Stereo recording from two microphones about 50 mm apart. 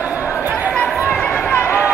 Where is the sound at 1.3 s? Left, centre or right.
Left.